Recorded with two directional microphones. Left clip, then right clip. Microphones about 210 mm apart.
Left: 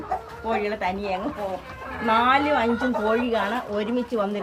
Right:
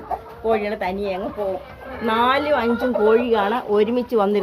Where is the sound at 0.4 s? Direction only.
40° right (ahead or behind).